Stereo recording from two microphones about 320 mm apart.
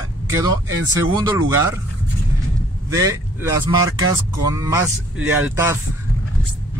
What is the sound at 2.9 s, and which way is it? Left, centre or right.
Speech, centre.